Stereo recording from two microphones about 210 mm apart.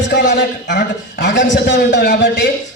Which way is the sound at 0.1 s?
55° left (ahead or behind).